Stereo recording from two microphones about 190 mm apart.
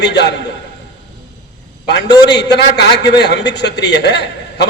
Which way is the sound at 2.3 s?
60° left (ahead or behind).